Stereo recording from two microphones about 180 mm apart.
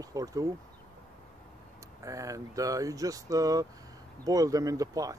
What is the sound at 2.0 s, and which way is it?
Speech, 20° right (ahead or behind).